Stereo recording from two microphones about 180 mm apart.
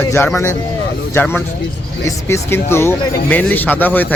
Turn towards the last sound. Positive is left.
turn(degrees=10)  # may be behind; listen again after turning